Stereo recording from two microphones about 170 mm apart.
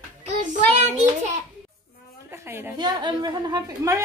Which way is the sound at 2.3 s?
15° right (ahead or behind).